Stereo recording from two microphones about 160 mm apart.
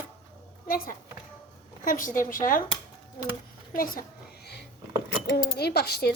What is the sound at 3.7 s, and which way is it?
Speech, 60° left (ahead or behind).